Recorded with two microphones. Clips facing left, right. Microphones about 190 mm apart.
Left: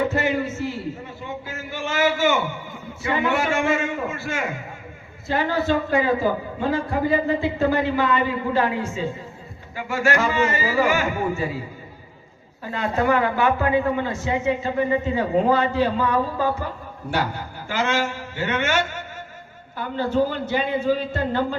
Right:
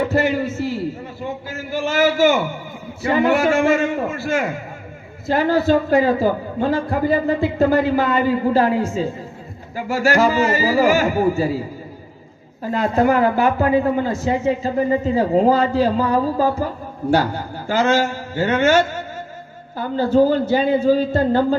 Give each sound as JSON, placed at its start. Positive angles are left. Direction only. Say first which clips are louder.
{"t": 0.1, "sound": "a sound", "louder": "right 4 dB", "side_deg": -35}
{"t": 3.0, "sound": "speech", "louder": "right 6 dB", "side_deg": -35}
{"t": 12.6, "sound": "speech", "louder": "right 5 dB", "side_deg": -40}